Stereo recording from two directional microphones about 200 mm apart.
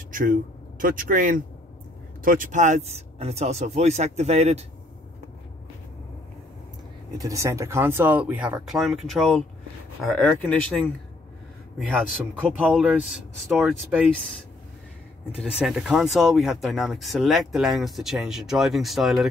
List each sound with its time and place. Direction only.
0.1 s speech: 40° right (ahead or behind)
7.2 s speech: 15° right (ahead or behind); by 10.9 s 5° left (ahead or behind)
12.4 s speech: 5° right (ahead or behind)
15.5 s speech: centre (ahead or behind)